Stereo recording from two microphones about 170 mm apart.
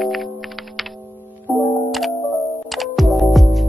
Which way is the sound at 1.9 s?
Centre (ahead or behind).